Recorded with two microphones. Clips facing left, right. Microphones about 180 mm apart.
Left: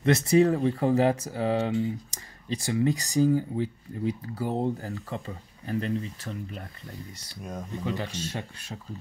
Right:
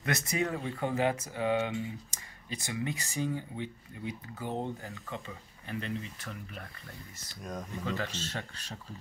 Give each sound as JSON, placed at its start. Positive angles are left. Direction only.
{"t": 0.0, "sound": "speech", "side_deg": 30}
{"t": 7.8, "sound": "speech", "side_deg": 15}